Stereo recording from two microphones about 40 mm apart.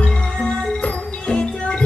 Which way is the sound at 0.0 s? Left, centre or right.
Left.